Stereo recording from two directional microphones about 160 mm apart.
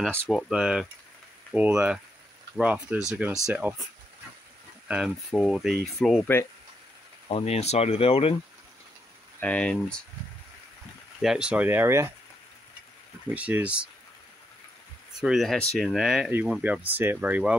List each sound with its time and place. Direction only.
0.3 s speech: centre (ahead or behind)
4.8 s speech: 5° right (ahead or behind)
7.2 s speech: 40° left (ahead or behind)
9.4 s speech: 10° left (ahead or behind)
11.1 s speech: 5° right (ahead or behind)
13.3 s speech: 10° right (ahead or behind)
15.1 s speech: centre (ahead or behind)